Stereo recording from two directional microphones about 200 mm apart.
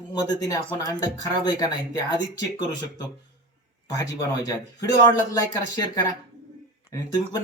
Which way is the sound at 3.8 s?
15° left (ahead or behind).